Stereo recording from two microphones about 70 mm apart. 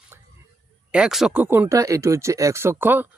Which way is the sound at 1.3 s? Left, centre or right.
Right.